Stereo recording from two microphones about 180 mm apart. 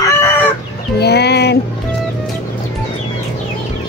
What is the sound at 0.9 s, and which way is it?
Speech, 65° left (ahead or behind).